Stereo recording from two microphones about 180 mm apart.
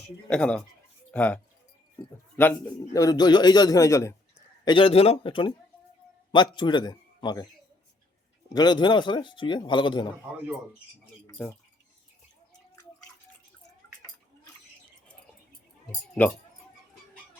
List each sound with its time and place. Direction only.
0.3 s a man's voice: 5° left (ahead or behind)
4.6 s a man's voice: 30° left (ahead or behind)
8.5 s a man's voice: 25° left (ahead or behind)
11.3 s speech: 15° left (ahead or behind)
15.9 s speech: 10° left (ahead or behind)